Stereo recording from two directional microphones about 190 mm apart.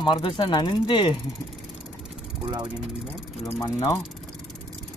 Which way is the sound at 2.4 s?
25° right (ahead or behind).